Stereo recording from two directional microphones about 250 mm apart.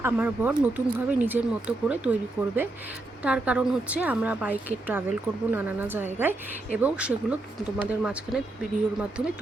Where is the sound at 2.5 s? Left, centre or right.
Centre.